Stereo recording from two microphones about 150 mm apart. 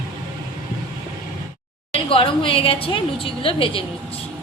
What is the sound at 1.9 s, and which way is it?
A woman's voice, 40° left (ahead or behind).